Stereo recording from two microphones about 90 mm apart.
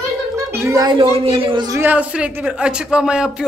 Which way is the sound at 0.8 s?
60° right (ahead or behind).